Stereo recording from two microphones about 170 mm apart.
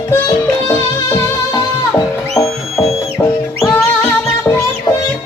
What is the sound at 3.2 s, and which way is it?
Music, 15° left (ahead or behind).